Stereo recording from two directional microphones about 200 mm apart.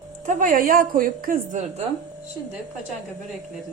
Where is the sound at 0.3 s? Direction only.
40° right (ahead or behind).